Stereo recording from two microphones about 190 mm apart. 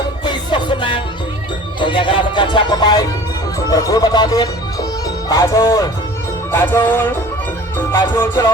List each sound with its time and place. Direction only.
0.3 s music: 25° left (ahead or behind)